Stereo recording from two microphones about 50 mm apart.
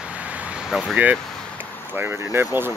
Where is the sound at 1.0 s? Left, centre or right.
Right.